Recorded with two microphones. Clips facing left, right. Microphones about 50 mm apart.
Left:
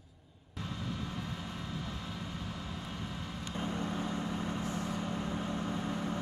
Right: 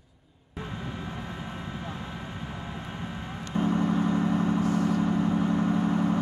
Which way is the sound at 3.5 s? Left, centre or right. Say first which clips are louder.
Right 11 dB; right.